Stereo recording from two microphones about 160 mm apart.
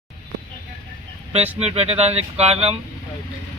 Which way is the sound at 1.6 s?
40° right (ahead or behind).